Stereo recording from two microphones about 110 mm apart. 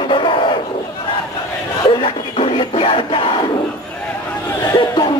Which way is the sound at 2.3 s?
60° left (ahead or behind).